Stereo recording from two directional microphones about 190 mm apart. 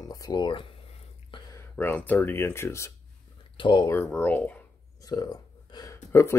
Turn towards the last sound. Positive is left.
turn(degrees=15)  # may be behind; listen again after turning